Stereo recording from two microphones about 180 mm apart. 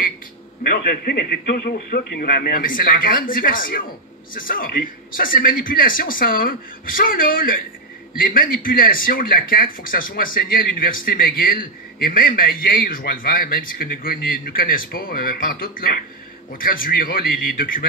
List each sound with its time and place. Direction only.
0.7 s speech: 60° left (ahead or behind)